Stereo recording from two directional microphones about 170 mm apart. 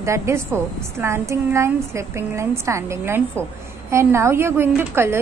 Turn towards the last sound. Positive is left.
turn(degrees=-15)  # may be behind; listen again after turning